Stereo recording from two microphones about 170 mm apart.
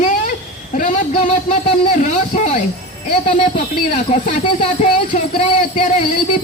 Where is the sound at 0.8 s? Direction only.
50° left (ahead or behind).